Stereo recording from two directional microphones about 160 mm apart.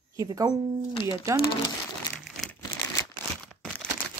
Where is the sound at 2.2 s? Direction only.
Centre (ahead or behind).